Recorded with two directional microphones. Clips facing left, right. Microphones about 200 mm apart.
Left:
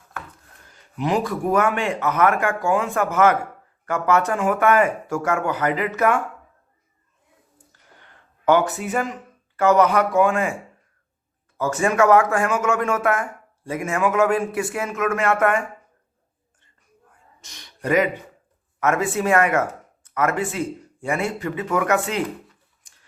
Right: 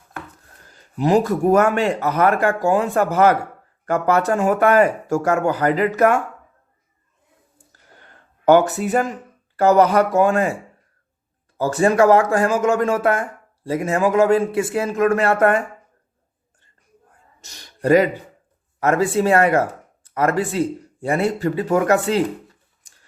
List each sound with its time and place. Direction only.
0.7 s a man's voice: 40° right (ahead or behind)
7.9 s a sound: 40° right (ahead or behind)
9.6 s a man's voice: 35° right (ahead or behind)
11.5 s a man's voice: 35° right (ahead or behind)
17.4 s a man's voice: 40° right (ahead or behind)